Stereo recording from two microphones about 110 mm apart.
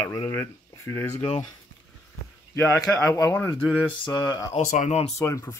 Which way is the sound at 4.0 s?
35° left (ahead or behind).